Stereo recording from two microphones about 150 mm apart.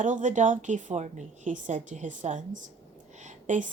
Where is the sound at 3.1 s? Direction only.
55° right (ahead or behind).